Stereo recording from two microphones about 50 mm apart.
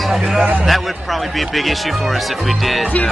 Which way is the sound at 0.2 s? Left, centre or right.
Centre.